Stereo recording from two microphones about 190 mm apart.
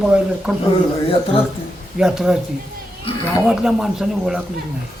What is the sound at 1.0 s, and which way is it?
Speech, 30° left (ahead or behind).